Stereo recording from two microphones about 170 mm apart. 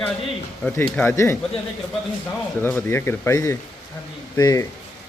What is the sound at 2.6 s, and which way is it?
Speech, 10° left (ahead or behind).